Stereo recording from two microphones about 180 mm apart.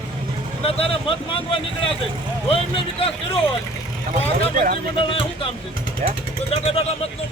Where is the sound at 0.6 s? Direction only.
30° left (ahead or behind).